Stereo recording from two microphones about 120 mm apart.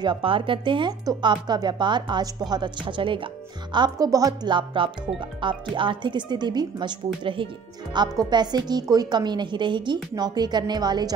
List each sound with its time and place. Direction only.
0.0 s speech: 45° right (ahead or behind)